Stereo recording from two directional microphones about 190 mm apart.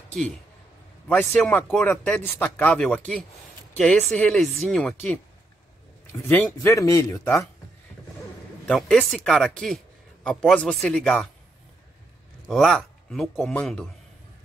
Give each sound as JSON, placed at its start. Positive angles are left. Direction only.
{"t": 1.0, "sound": "speech", "side_deg": 5}
{"t": 6.2, "sound": "speech", "side_deg": 15}
{"t": 8.2, "sound": "speech", "side_deg": 5}
{"t": 12.4, "sound": "speech", "side_deg": 0}